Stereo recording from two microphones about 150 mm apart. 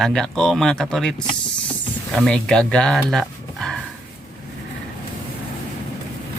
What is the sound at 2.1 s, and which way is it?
Speech, 5° left (ahead or behind).